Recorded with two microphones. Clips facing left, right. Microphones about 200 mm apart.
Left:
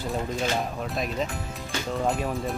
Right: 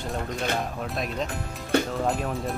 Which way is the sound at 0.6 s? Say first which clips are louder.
Left 1 dB; centre (ahead or behind).